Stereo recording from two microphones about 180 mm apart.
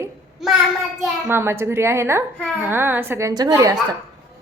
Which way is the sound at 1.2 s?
15° right (ahead or behind).